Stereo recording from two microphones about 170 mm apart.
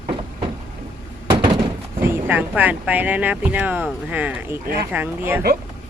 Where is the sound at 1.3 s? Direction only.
30° right (ahead or behind).